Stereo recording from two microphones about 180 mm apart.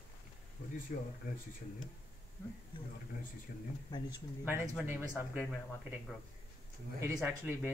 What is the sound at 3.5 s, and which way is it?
Speech, 55° left (ahead or behind).